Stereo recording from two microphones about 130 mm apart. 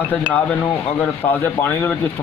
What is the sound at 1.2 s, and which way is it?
Speech, 15° left (ahead or behind).